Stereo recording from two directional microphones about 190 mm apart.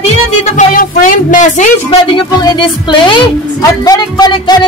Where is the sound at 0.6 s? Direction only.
45° left (ahead or behind).